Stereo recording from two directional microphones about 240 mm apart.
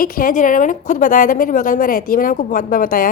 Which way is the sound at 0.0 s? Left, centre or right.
Left.